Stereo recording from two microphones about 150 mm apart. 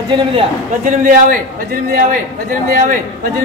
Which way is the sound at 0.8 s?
60° right (ahead or behind).